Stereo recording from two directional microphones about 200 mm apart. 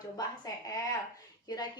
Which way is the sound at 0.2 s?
15° left (ahead or behind).